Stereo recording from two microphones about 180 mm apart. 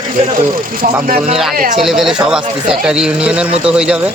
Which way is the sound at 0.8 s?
55° right (ahead or behind).